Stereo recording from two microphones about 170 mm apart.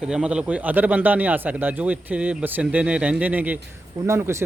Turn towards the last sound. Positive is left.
turn(degrees=-15)  # may be behind; listen again after turning